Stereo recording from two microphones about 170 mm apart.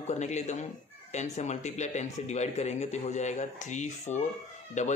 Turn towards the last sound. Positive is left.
turn(degrees=45)  # may be behind; listen again after turning